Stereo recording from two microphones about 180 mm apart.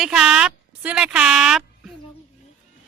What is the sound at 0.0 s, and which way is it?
A woman's voice, 5° right (ahead or behind).